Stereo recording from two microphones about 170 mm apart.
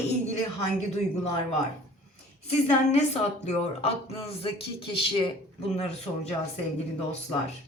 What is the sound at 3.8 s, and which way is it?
Speech, 35° left (ahead or behind).